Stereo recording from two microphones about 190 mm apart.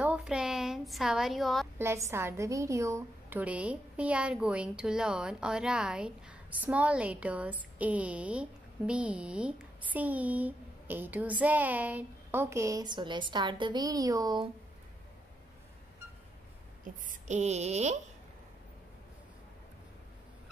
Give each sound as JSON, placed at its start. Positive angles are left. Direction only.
{"t": 0.0, "sound": "a sound", "side_deg": -5}
{"t": 1.8, "sound": "a woman's voice", "side_deg": -15}
{"t": 16.8, "sound": "a woman's voice", "side_deg": -40}